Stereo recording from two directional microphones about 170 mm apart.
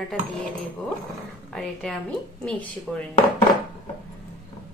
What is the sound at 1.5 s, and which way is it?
A woman's voice, 5° left (ahead or behind).